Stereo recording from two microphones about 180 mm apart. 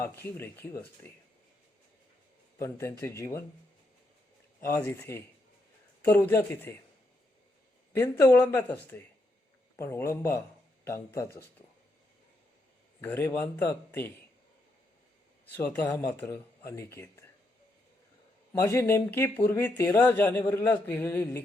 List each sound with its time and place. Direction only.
0.0 s speech: 15° left (ahead or behind)
2.6 s speech: 15° left (ahead or behind)
4.7 s speech: 15° left (ahead or behind)
7.9 s speech: 15° left (ahead or behind)
13.0 s speech: 10° left (ahead or behind)
15.5 s speech: 15° left (ahead or behind)
18.6 s speech: 15° left (ahead or behind)